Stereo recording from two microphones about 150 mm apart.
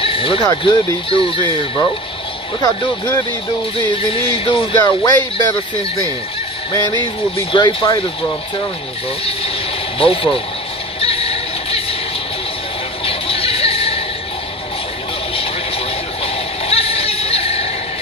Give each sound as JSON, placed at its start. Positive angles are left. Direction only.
{"t": 0.0, "sound": "music", "side_deg": 35}
{"t": 0.5, "sound": "speech", "side_deg": 25}
{"t": 6.7, "sound": "speech", "side_deg": 25}
{"t": 9.9, "sound": "speech", "side_deg": 35}
{"t": 11.0, "sound": "music", "side_deg": 40}
{"t": 13.0, "sound": "a sound", "side_deg": 40}
{"t": 15.3, "sound": "vehicle", "side_deg": 40}
{"t": 16.6, "sound": "a sound", "side_deg": 40}